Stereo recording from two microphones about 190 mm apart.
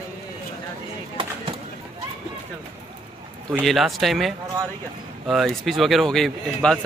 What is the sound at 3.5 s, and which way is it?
Speech, centre (ahead or behind).